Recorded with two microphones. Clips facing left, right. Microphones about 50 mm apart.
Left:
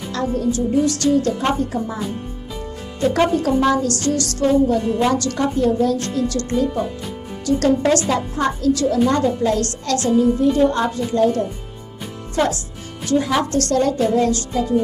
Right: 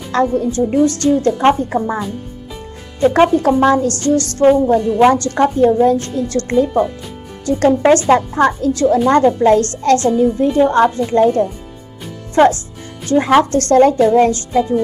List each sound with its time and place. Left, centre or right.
0.1 s a woman's voice: right
1.7 s speech: right
3.1 s a woman's voice: right
13.1 s a woman's voice: right